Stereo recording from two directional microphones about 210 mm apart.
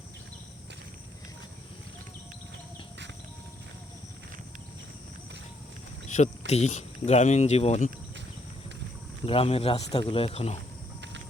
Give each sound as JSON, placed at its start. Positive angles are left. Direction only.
{"t": 6.1, "sound": "cricket", "side_deg": 35}
{"t": 6.5, "sound": "speech", "side_deg": 35}
{"t": 9.2, "sound": "speech", "side_deg": 25}